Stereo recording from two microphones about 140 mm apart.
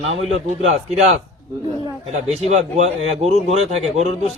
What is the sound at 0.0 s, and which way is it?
Speech, 50° right (ahead or behind).